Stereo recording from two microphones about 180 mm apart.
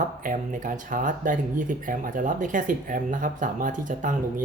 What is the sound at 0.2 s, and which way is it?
Speech, 50° right (ahead or behind).